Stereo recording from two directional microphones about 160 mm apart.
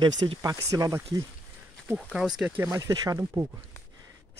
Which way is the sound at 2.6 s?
20° right (ahead or behind).